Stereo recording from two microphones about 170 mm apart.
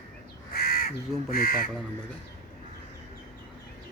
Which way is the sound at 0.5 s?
65° left (ahead or behind).